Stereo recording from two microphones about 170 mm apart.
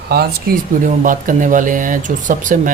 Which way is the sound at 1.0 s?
50° right (ahead or behind).